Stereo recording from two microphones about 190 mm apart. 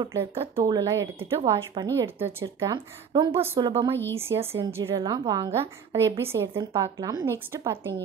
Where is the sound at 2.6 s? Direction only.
25° right (ahead or behind).